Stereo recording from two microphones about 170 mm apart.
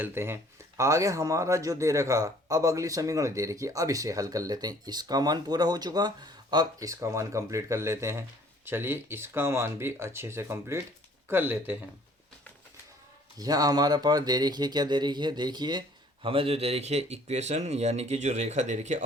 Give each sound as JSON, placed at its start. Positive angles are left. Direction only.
{"t": 0.0, "sound": "speech", "side_deg": -15}
{"t": 13.4, "sound": "speech", "side_deg": -20}